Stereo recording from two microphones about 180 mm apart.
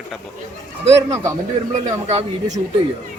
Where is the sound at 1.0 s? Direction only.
20° right (ahead or behind).